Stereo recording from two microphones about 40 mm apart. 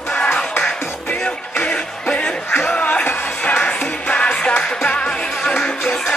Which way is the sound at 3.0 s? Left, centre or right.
Left.